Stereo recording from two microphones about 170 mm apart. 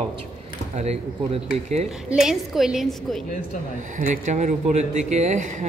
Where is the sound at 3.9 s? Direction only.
45° right (ahead or behind).